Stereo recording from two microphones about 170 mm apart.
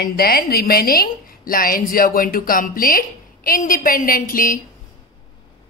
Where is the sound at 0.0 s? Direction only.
65° left (ahead or behind).